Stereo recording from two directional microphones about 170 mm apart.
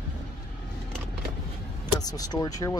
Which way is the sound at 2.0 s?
20° left (ahead or behind).